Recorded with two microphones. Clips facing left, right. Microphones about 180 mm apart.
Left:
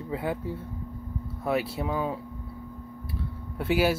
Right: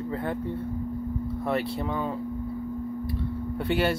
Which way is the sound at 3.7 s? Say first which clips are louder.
Left 2 dB; 5° left (ahead or behind).